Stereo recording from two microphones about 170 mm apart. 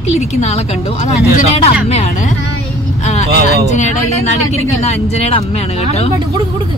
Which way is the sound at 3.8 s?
40° left (ahead or behind).